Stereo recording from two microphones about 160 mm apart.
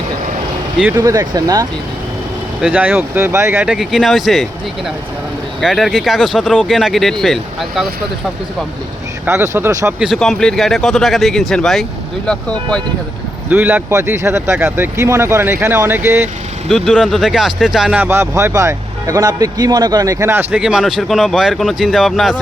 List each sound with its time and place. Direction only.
0.8 s speech: 10° right (ahead or behind)
2.6 s speech: 10° right (ahead or behind)
3.7 s speech: centre (ahead or behind)
5.5 s speech: centre (ahead or behind)
9.2 s speech: 15° right (ahead or behind)
10.1 s speech: centre (ahead or behind)
13.5 s speech: 10° right (ahead or behind)
16.6 s speech: centre (ahead or behind)